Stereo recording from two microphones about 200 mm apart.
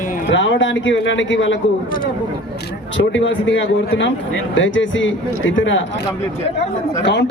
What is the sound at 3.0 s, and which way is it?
Speech, 70° left (ahead or behind).